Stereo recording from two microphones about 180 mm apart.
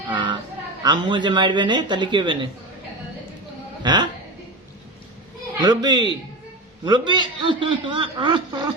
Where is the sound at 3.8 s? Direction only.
25° right (ahead or behind).